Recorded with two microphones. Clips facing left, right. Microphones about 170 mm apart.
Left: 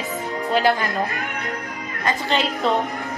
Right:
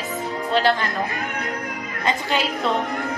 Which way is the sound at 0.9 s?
Centre (ahead or behind).